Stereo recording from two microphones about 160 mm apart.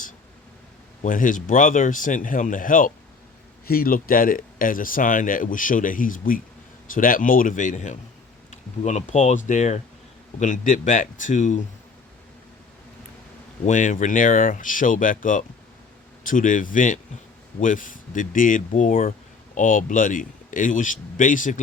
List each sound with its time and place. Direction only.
1.0 s speech: 55° left (ahead or behind)
13.7 s speech: 50° left (ahead or behind)